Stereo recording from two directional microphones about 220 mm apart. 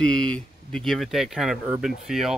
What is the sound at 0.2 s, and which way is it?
Speech, 5° left (ahead or behind).